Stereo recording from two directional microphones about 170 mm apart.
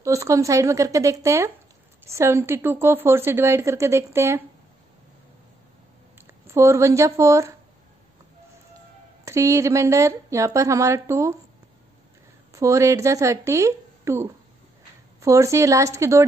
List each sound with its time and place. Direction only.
0.0 s a woman's voice: 20° right (ahead or behind)
6.2 s speech: 15° right (ahead or behind)
9.2 s a woman's voice: 20° right (ahead or behind)
12.5 s a woman's voice: 15° right (ahead or behind)